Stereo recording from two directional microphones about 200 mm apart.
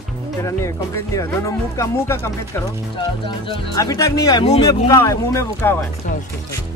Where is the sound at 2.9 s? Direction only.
25° left (ahead or behind).